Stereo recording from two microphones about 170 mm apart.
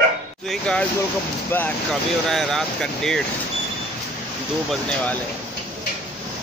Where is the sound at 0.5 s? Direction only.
5° left (ahead or behind).